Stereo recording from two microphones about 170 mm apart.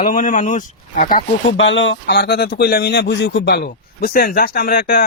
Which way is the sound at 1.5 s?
90° left.